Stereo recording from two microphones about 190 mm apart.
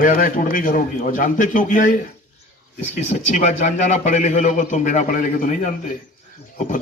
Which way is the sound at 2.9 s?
40° left (ahead or behind).